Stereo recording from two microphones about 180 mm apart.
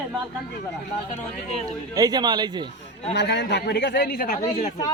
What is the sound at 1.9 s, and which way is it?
Speech, 20° right (ahead or behind).